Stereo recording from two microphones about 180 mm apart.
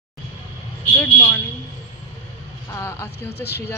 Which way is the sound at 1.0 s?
15° left (ahead or behind).